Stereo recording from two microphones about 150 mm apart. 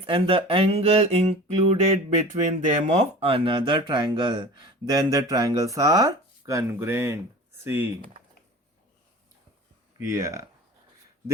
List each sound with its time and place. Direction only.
0.0 s a sound: 40° right (ahead or behind); by 7.2 s 15° right (ahead or behind)
7.6 s speech: 15° right (ahead or behind)
10.1 s speech: 20° right (ahead or behind)